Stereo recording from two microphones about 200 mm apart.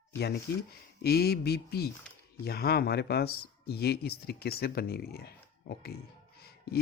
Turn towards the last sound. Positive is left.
turn(degrees=50)  # may be behind; listen again after turning